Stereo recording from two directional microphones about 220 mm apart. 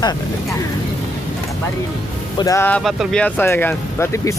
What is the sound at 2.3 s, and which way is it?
Speech, 15° left (ahead or behind).